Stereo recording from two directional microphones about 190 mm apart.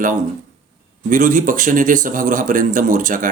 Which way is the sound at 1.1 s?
45° right (ahead or behind).